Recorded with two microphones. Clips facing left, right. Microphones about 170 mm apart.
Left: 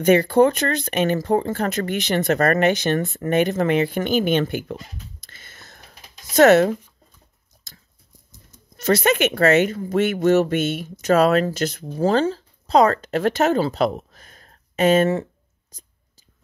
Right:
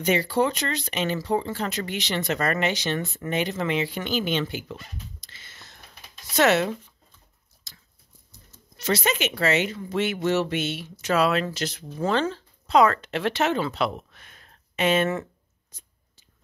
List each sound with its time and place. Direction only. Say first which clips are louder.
0.0 s speech: left 8 dB; 55° left (ahead or behind)
8.7 s speech: left 7 dB; 50° left (ahead or behind)
12.0 s speech: left 5 dB; 35° left (ahead or behind)
15.7 s whispering: left 5 dB; 40° left (ahead or behind)